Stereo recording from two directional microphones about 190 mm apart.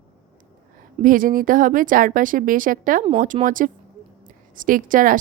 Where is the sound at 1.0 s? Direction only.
45° right (ahead or behind).